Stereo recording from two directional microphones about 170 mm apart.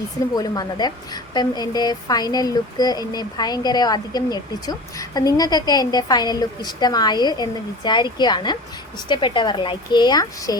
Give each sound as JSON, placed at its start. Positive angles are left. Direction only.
{"t": 0.3, "sound": "a woman's voice", "side_deg": 25}